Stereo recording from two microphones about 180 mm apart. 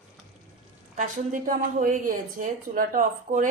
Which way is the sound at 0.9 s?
45° right (ahead or behind).